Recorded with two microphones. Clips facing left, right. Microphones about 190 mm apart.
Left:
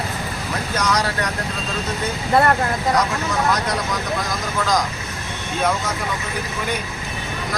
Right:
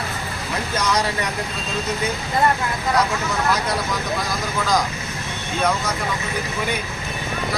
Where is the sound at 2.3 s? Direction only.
70° left (ahead or behind).